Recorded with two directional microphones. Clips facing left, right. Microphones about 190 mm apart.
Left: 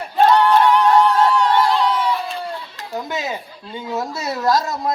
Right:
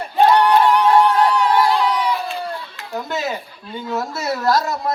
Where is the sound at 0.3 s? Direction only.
10° right (ahead or behind).